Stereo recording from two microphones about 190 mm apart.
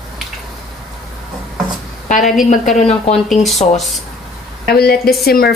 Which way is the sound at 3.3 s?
Centre (ahead or behind).